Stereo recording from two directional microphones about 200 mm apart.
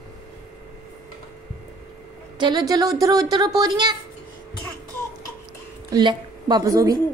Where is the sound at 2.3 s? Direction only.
20° right (ahead or behind).